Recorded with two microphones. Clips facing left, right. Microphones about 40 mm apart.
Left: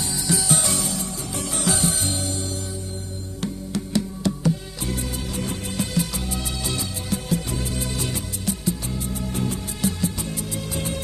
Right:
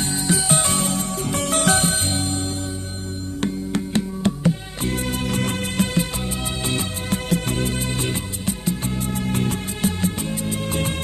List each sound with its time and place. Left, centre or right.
0.0 s music: right
5.9 s music: right